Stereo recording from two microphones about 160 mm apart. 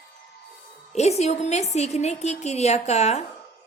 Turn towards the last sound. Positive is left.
turn(degrees=45)  # may be behind; listen again after turning